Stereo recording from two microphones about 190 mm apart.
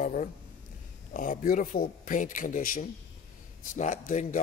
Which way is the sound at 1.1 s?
45° left (ahead or behind).